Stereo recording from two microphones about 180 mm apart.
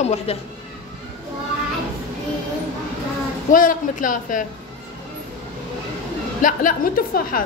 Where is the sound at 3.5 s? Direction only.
50° left (ahead or behind).